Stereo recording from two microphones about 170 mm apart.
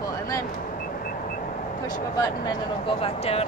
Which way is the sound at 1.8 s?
25° left (ahead or behind).